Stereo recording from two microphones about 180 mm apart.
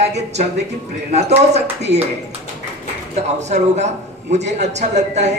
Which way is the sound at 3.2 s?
40° right (ahead or behind).